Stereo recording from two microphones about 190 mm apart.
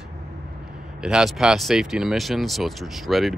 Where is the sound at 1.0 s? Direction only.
Centre (ahead or behind).